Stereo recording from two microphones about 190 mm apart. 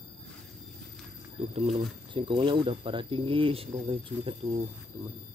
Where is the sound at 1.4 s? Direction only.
30° right (ahead or behind).